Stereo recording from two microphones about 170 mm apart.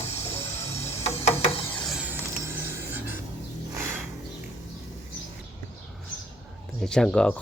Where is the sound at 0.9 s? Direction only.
40° left (ahead or behind).